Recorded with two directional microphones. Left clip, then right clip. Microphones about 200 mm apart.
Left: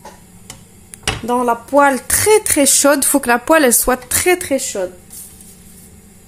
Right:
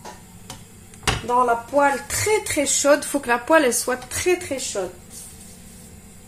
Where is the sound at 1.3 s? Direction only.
50° left (ahead or behind).